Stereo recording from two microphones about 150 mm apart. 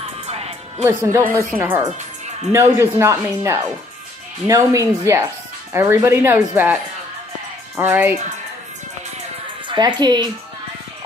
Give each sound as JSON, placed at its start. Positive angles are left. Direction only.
{"t": 0.0, "sound": "music", "side_deg": -45}
{"t": 0.8, "sound": "speech", "side_deg": -20}
{"t": 1.5, "sound": "speech", "side_deg": -10}
{"t": 9.7, "sound": "speech", "side_deg": -30}